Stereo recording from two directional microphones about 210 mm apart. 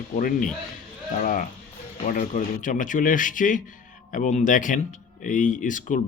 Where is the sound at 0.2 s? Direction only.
40° left (ahead or behind).